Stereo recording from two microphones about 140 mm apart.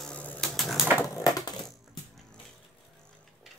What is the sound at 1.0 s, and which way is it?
Crushing, 25° left (ahead or behind).